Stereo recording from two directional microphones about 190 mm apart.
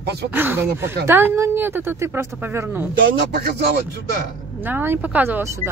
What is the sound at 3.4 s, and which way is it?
Speech, 60° right (ahead or behind).